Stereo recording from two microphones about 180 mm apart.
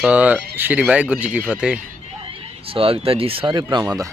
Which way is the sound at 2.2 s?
30° right (ahead or behind).